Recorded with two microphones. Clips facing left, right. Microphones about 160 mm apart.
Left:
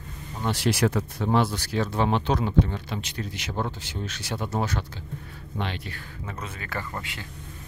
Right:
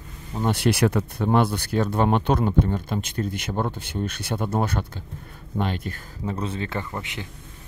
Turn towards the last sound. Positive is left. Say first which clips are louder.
# right 3 dB
turn(degrees=-20)  # may be behind; listen again after turning